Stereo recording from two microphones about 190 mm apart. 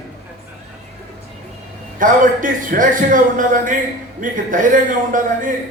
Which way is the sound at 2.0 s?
45° right (ahead or behind).